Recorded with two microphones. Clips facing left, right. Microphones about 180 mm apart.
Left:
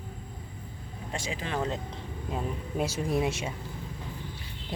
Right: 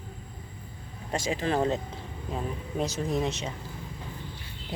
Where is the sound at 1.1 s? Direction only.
40° right (ahead or behind).